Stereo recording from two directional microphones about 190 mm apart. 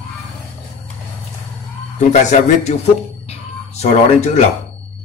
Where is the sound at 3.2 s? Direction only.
35° left (ahead or behind).